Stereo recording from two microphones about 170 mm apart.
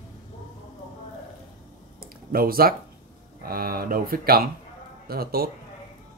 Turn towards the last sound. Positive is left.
turn(degrees=-65)  # may be behind; listen again after turning